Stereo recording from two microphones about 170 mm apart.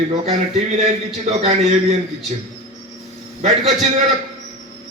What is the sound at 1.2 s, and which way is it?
Speech, 40° right (ahead or behind).